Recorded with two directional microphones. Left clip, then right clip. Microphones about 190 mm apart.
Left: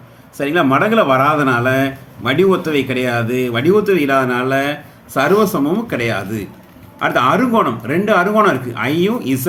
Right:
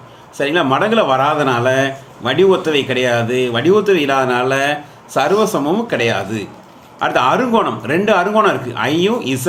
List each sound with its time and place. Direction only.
0.3 s speech: 15° left (ahead or behind)